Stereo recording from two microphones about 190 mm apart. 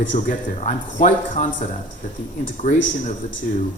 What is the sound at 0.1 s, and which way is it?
Speech, 40° left (ahead or behind).